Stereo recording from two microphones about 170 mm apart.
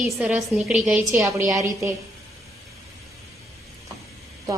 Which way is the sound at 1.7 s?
20° right (ahead or behind).